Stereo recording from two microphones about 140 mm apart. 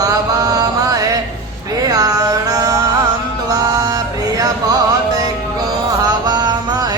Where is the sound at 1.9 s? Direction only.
25° right (ahead or behind).